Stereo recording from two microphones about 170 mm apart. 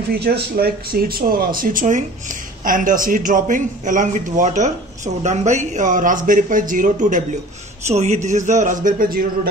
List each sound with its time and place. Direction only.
0.1 s speech: 70° right (ahead or behind)